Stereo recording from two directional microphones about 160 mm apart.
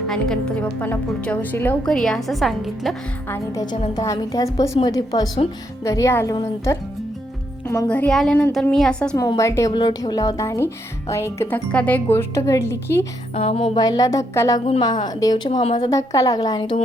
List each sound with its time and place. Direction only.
0.1 s a woman's voice: 5° left (ahead or behind)
3.2 s music: 15° left (ahead or behind)
7.9 s a woman's voice: 5° left (ahead or behind)
9.1 s music: 20° left (ahead or behind)
11.1 s a woman's voice: 15° left (ahead or behind)
13.3 s music: 35° left (ahead or behind)